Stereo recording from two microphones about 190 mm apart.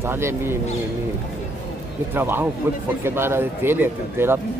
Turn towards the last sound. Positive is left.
turn(degrees=-10)  # may be behind; listen again after turning